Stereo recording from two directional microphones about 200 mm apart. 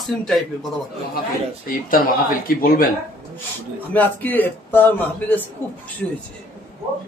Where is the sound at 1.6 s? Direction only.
45° left (ahead or behind).